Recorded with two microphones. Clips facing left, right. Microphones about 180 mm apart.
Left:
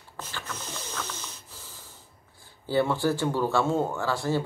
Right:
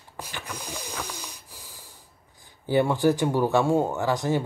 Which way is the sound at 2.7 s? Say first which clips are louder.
Right 3 dB; 15° right (ahead or behind).